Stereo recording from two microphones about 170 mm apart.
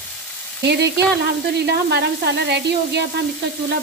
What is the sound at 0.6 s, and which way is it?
Sizzle, 75° right (ahead or behind).